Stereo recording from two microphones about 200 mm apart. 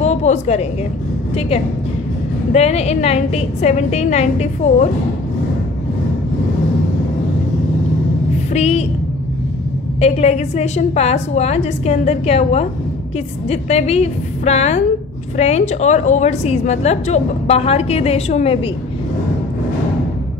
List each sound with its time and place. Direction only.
0.0 s a woman's voice: 35° left (ahead or behind)
2.5 s a woman's voice: 30° left (ahead or behind)
8.5 s a woman's voice: 35° left (ahead or behind)
9.9 s a woman's voice: 30° left (ahead or behind)